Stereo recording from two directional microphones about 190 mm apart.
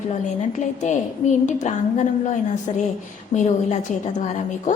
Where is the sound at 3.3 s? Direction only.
40° left (ahead or behind).